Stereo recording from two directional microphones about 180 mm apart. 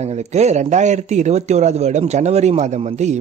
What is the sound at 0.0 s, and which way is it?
Speech, 40° right (ahead or behind).